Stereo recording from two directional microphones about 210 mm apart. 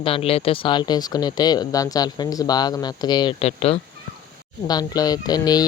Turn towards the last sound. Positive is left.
turn(degrees=20)  # may be behind; listen again after turning